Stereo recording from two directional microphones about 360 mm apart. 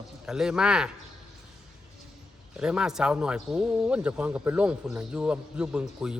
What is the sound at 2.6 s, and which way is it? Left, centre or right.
A man's voice, centre.